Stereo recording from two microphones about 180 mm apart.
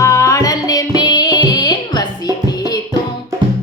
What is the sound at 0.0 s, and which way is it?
Music, 15° left (ahead or behind).